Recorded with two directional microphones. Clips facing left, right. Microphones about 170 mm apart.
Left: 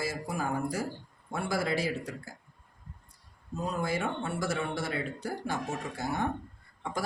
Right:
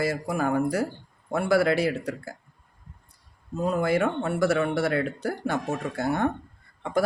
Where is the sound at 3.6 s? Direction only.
60° right (ahead or behind).